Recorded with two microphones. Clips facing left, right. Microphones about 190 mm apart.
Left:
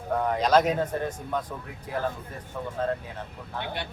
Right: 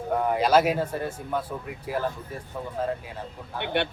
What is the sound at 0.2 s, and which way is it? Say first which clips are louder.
Speech: right 1 dB; 5° right (ahead or behind).